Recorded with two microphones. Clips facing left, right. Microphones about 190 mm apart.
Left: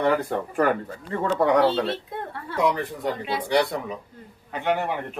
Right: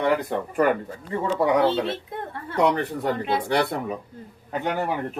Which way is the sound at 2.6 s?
65° right (ahead or behind).